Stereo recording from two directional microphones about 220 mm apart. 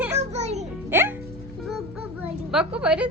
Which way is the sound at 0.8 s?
10° right (ahead or behind).